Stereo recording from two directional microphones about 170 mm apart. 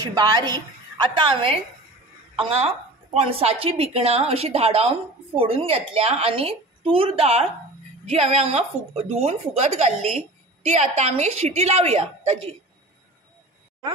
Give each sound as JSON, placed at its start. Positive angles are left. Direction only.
{"t": 0.0, "sound": "a woman's voice", "side_deg": -25}